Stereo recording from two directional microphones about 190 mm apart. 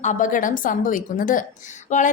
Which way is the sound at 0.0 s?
40° left (ahead or behind).